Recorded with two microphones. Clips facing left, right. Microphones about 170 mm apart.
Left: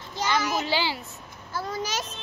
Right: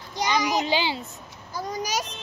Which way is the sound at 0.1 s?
15° right (ahead or behind).